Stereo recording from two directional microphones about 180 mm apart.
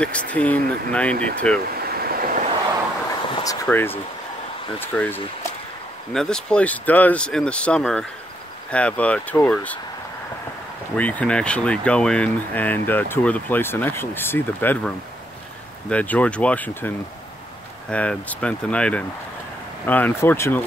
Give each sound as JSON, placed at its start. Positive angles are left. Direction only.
{"t": 0.0, "sound": "speech", "side_deg": 5}
{"t": 1.8, "sound": "vehicle", "side_deg": -55}
{"t": 3.6, "sound": "speech", "side_deg": 10}
{"t": 11.0, "sound": "speech", "side_deg": 10}
{"t": 15.9, "sound": "speech", "side_deg": 10}